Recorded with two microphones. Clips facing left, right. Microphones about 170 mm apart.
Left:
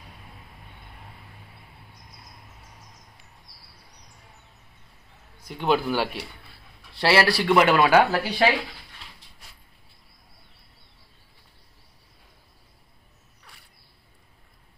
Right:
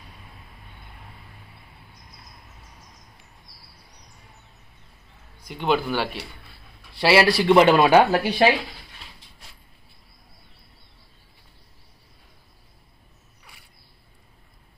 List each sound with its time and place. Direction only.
5.5 s speech: 5° left (ahead or behind)
7.0 s speech: 15° right (ahead or behind)
13.4 s a sound: 5° right (ahead or behind)